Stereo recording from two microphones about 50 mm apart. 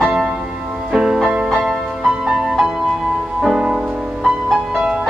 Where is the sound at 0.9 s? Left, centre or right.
Centre.